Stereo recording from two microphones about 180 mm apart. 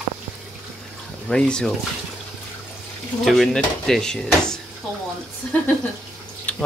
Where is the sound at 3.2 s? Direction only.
Centre (ahead or behind).